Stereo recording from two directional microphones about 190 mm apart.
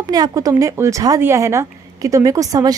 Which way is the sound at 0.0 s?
20° right (ahead or behind).